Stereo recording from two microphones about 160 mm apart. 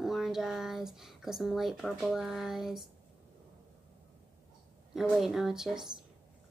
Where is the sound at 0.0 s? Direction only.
Centre (ahead or behind).